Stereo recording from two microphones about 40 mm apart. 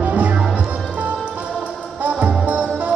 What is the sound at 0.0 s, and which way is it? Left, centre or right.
Music, right.